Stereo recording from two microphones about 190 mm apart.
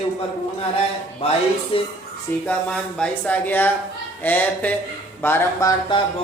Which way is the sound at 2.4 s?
5° left (ahead or behind).